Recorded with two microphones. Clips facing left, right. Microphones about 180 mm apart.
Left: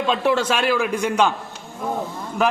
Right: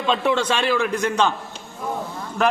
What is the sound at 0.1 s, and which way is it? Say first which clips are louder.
A man's voice: even; 5° left (ahead or behind).